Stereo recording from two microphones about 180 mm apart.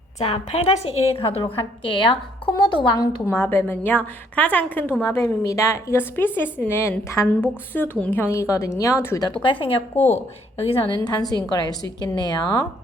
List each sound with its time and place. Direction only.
0.2 s a woman's voice: 35° left (ahead or behind)
9.9 s a woman's voice: 10° left (ahead or behind)
10.6 s a woman's voice: 30° left (ahead or behind)